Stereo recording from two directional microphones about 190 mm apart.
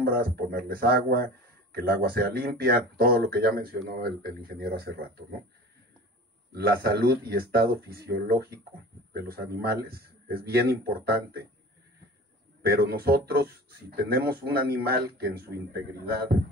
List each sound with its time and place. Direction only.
0.0 s a man's voice: 55° right (ahead or behind)
6.5 s a man's voice: 55° right (ahead or behind)
12.6 s a man's voice: 55° right (ahead or behind)